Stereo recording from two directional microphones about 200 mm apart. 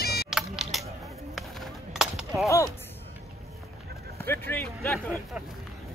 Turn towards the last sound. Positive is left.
turn(degrees=10)  # may be behind; listen again after turning